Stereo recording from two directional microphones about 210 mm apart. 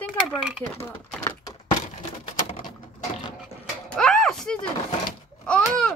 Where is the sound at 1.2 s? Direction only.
15° left (ahead or behind).